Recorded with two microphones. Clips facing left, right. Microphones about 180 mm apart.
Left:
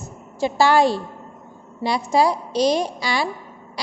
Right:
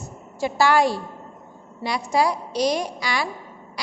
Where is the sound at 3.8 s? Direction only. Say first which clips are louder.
Left 3 dB; 30° left (ahead or behind).